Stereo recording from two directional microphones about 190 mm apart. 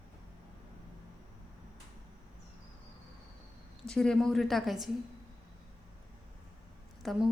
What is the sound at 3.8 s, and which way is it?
A woman's voice, 5° left (ahead or behind).